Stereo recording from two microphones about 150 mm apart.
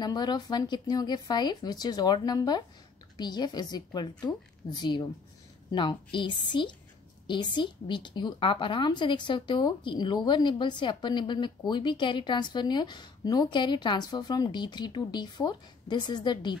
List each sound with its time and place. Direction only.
0.0 s a woman's voice: 30° left (ahead or behind)